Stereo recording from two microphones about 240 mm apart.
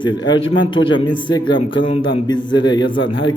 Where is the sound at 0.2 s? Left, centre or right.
Left.